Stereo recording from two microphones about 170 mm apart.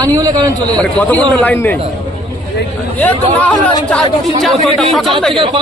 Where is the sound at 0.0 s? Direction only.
20° right (ahead or behind).